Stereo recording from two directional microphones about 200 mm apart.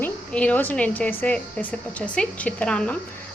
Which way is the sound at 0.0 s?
5° left (ahead or behind).